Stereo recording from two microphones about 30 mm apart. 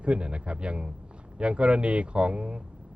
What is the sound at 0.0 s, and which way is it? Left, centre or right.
Speech, right.